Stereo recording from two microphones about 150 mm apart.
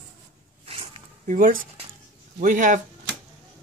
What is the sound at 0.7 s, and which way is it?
Zipper, 40° right (ahead or behind).